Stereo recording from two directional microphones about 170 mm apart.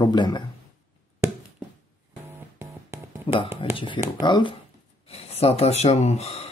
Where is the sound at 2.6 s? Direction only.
15° right (ahead or behind).